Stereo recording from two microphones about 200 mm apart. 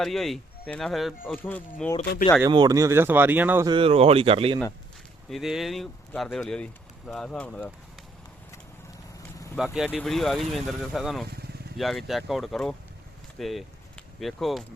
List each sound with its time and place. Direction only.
0.0 s speech: centre (ahead or behind)
2.4 s speech: 20° right (ahead or behind)
3.7 s speech: 25° right (ahead or behind)
5.3 s speech: centre (ahead or behind)
9.7 s speech: 5° right (ahead or behind)